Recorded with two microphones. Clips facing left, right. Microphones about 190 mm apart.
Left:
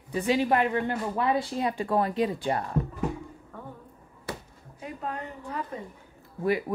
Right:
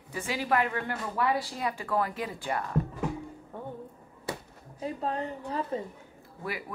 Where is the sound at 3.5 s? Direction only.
25° right (ahead or behind).